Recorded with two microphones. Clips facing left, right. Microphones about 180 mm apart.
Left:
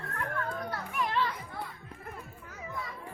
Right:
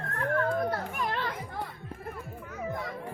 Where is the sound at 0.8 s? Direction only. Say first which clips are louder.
Left 1 dB; 45° right (ahead or behind).